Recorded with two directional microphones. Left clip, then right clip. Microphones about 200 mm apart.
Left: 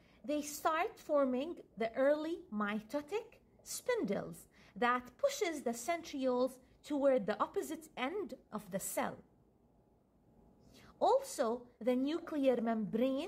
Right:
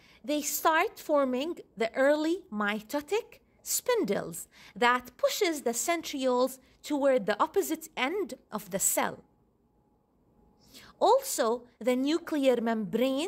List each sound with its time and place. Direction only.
0.1 s a woman's voice: 55° right (ahead or behind)
10.7 s a woman's voice: 55° right (ahead or behind)